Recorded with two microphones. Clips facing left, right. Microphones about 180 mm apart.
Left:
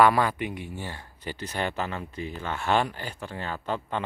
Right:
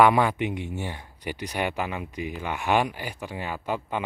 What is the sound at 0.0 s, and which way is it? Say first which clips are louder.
Speech: right 2 dB; 15° right (ahead or behind).